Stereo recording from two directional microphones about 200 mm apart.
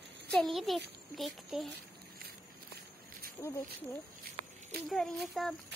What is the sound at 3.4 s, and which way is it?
Speech, 10° left (ahead or behind).